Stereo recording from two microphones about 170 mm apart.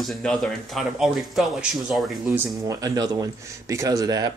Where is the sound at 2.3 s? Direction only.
20° right (ahead or behind).